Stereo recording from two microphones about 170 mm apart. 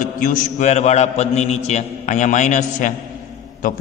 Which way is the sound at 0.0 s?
55° left (ahead or behind).